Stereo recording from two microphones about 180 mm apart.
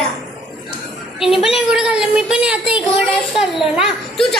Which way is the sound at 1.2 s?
Centre (ahead or behind).